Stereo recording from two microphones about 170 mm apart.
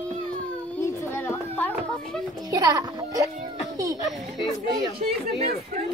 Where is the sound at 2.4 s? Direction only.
20° right (ahead or behind).